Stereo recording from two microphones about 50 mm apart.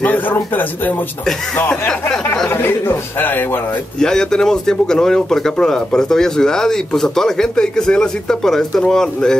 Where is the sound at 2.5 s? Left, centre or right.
Left.